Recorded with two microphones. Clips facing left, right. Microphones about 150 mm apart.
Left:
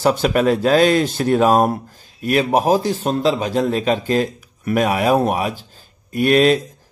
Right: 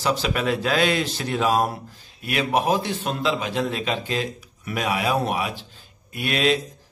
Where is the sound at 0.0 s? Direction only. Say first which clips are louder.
Left 8 dB; 50° left (ahead or behind).